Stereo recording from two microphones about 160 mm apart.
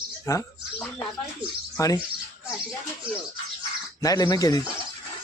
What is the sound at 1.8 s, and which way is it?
Speech, 20° left (ahead or behind).